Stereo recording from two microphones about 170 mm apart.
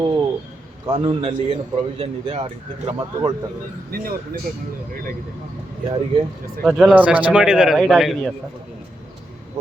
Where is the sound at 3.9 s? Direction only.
60° right (ahead or behind).